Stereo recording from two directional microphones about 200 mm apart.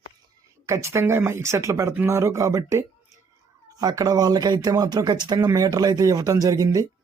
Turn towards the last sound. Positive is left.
turn(degrees=-15)  # may be behind; listen again after turning